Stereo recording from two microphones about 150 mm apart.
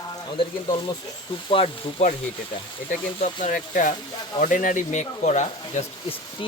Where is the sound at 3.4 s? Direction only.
60° left (ahead or behind).